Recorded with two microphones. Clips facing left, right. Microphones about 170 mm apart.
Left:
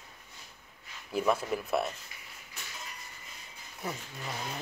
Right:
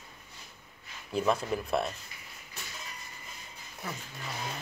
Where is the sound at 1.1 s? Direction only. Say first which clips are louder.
Even; 5° left (ahead or behind).